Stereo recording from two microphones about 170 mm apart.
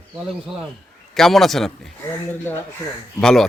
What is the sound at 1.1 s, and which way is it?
Speech, centre (ahead or behind).